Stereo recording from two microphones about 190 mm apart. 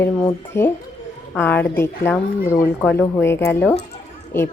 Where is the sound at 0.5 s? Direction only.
15° left (ahead or behind).